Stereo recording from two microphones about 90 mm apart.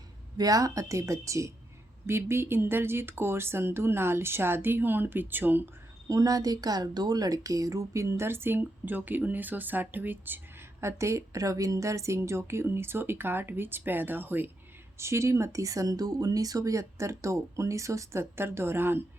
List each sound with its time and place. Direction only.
0.3 s speech: 45° right (ahead or behind); by 5.6 s 20° right (ahead or behind)
6.1 s speech: 40° right (ahead or behind); by 19.0 s 25° right (ahead or behind)